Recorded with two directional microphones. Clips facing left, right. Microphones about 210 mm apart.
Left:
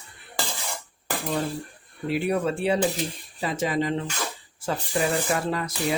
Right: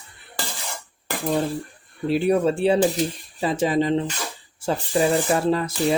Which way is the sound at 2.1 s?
30° right (ahead or behind).